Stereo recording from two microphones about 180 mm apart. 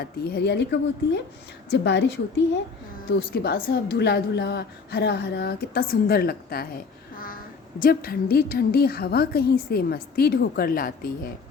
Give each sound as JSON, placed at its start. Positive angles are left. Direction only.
{"t": 0.0, "sound": "a woman's voice", "side_deg": 65}
{"t": 3.2, "sound": "a woman's voice", "side_deg": 60}
{"t": 7.8, "sound": "a woman's voice", "side_deg": 55}